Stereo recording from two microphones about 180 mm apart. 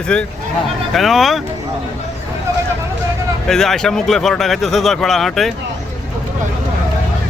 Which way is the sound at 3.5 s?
Centre (ahead or behind).